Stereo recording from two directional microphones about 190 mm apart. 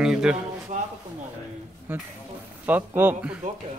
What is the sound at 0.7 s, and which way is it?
Speech, 40° right (ahead or behind).